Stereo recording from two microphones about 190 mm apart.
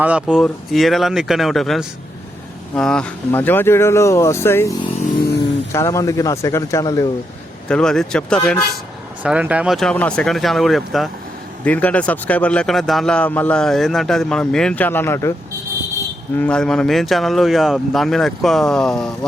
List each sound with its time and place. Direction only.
0.0 s a man's voice: 5° right (ahead or behind); by 4.7 s 15° left (ahead or behind)
4.9 s vehicle: 45° left (ahead or behind)
5.7 s speech: 15° left (ahead or behind)
7.7 s a man's voice: 5° left (ahead or behind)
9.2 s a man's voice: 5° right (ahead or behind); by 15.3 s 15° left (ahead or behind)
16.4 s a man's voice: 5° left (ahead or behind)